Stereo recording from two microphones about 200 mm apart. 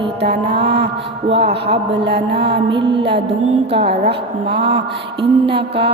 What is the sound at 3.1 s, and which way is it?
A woman's voice, 60° right (ahead or behind).